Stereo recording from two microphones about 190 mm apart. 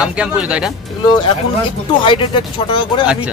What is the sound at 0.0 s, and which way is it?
Speech, 5° right (ahead or behind).